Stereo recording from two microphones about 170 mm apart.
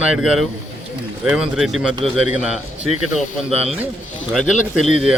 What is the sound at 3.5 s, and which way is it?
Speech, 35° right (ahead or behind).